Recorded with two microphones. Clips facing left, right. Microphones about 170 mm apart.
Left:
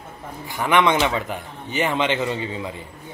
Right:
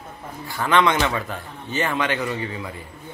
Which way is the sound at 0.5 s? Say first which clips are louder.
Left 1 dB; 15° left (ahead or behind).